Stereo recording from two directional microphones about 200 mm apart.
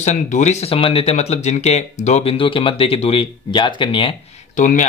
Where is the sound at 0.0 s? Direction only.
35° left (ahead or behind).